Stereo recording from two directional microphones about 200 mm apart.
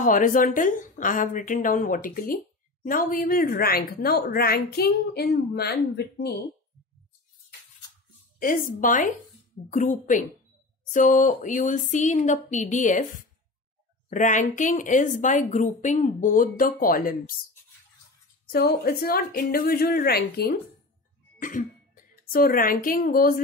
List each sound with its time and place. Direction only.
0.0 s a woman's voice: 40° left (ahead or behind)
8.4 s a woman's voice: 45° left (ahead or behind)
18.5 s a woman's voice: 50° left (ahead or behind)